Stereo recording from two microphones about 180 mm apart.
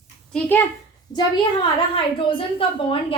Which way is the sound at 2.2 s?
30° left (ahead or behind).